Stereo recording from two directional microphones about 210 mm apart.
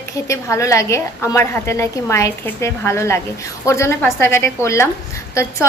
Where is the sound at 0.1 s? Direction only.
15° left (ahead or behind).